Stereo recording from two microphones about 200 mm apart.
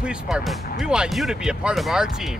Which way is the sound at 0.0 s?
Centre (ahead or behind).